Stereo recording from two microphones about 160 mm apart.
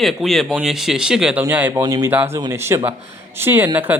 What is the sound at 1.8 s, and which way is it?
Speech, 25° right (ahead or behind).